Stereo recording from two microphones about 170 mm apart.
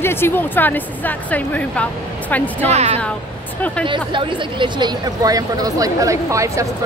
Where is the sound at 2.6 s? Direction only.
40° right (ahead or behind).